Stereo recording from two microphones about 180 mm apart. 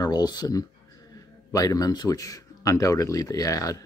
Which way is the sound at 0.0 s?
20° left (ahead or behind).